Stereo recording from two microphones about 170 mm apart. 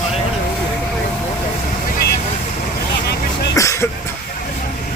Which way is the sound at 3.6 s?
15° left (ahead or behind).